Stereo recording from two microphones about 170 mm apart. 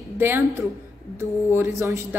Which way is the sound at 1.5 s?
15° right (ahead or behind).